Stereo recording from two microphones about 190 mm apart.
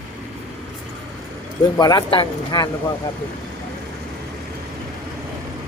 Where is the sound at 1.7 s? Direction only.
20° left (ahead or behind).